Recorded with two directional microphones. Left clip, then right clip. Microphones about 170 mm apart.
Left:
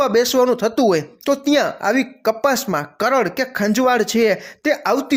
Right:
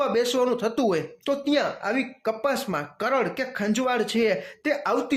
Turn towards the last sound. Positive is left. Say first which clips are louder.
# left 7 dB
turn(degrees=35)  # may be behind; listen again after turning